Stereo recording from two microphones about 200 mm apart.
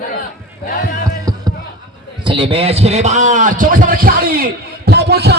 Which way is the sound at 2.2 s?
25° right (ahead or behind).